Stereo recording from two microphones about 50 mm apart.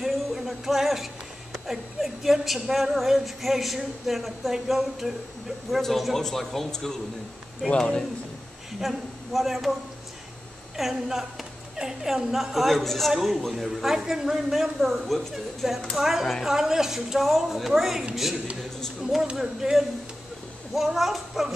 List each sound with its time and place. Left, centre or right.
0.0 s music: centre
1.5 s a sound: centre
2.7 s a man's voice: centre
8.8 s a man's voice: centre
10.8 s a woman's voice: centre